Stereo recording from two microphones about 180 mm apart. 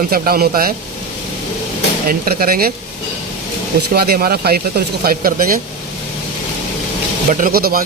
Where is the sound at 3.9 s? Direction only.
55° right (ahead or behind).